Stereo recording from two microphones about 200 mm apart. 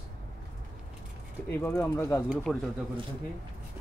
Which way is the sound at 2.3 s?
Centre (ahead or behind).